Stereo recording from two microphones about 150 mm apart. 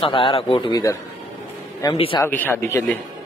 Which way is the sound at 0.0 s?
35° left (ahead or behind).